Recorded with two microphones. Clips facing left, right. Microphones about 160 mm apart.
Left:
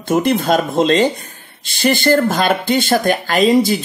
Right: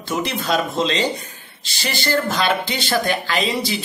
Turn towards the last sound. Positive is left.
turn(degrees=50)  # may be behind; listen again after turning